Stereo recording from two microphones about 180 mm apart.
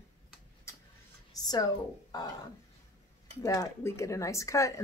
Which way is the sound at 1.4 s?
20° left (ahead or behind).